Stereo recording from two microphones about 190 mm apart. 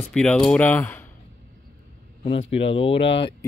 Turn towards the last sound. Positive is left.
turn(degrees=30)  # may be behind; listen again after turning